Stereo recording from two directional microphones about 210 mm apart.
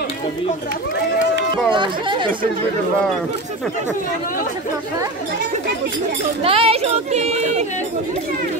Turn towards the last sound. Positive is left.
turn(degrees=-30)  # may be behind; listen again after turning